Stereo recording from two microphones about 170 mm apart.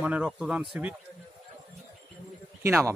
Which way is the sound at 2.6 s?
15° right (ahead or behind).